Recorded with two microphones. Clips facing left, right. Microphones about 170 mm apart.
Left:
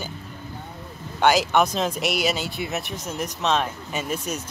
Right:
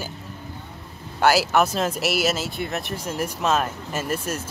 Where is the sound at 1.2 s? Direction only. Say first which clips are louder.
Even; 5° right (ahead or behind).